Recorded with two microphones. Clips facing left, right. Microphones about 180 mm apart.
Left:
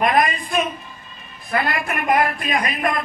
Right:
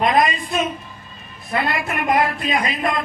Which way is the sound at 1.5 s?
25° right (ahead or behind).